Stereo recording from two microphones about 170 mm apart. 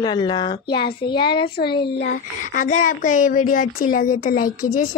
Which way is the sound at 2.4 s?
50° left (ahead or behind).